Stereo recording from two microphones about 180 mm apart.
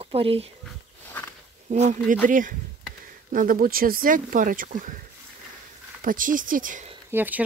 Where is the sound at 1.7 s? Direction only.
40° right (ahead or behind).